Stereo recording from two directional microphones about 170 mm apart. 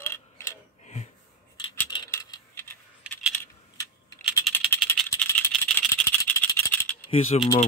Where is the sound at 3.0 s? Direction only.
5° right (ahead or behind).